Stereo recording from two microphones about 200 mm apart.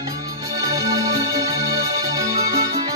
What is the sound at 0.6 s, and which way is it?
Music, 15° right (ahead or behind).